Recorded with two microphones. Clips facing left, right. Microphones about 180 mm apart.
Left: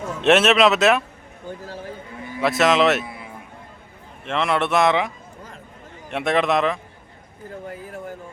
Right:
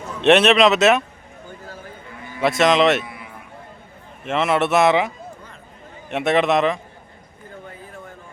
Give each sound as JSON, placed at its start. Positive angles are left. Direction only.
{"t": 0.2, "sound": "speech", "side_deg": 0}
{"t": 2.4, "sound": "speech", "side_deg": 0}
{"t": 3.0, "sound": "a sound", "side_deg": 30}
{"t": 4.3, "sound": "speech", "side_deg": -5}